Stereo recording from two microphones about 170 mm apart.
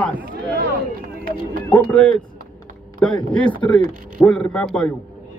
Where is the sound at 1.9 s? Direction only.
10° left (ahead or behind).